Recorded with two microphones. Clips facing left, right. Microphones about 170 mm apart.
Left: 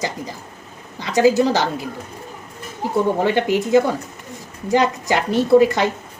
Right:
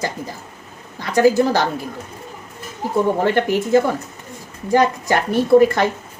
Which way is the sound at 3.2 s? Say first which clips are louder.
Even; 15° left (ahead or behind).